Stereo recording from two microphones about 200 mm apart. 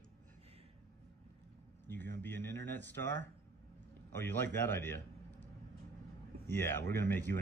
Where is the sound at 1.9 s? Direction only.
10° left (ahead or behind).